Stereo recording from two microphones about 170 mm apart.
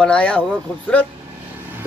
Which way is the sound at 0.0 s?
5° left (ahead or behind).